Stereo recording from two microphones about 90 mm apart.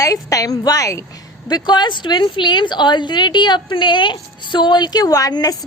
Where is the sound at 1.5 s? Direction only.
50° left (ahead or behind).